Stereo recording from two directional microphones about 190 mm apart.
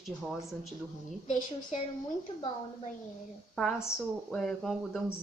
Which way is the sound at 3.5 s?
Centre (ahead or behind).